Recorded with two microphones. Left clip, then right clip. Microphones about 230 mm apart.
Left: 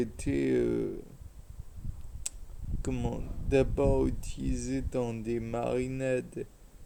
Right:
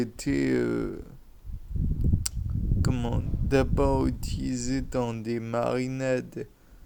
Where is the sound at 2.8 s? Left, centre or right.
Right.